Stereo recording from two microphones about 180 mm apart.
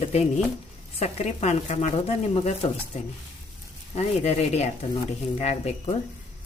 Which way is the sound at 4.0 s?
35° left (ahead or behind).